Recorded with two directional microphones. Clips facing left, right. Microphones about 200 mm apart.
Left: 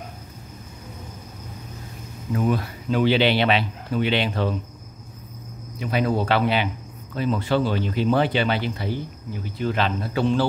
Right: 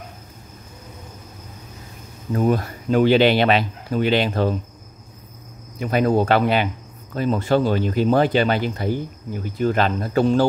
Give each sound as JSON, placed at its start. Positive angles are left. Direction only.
{"t": 2.3, "sound": "speech", "side_deg": -45}
{"t": 5.8, "sound": "speech", "side_deg": -45}